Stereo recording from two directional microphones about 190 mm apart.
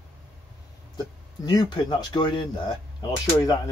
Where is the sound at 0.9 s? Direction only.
20° left (ahead or behind).